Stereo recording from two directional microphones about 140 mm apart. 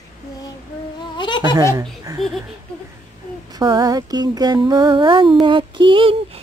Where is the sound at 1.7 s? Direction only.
25° right (ahead or behind).